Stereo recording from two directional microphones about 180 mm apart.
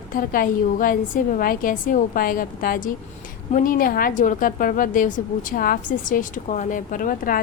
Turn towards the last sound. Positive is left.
turn(degrees=50)  # may be behind; listen again after turning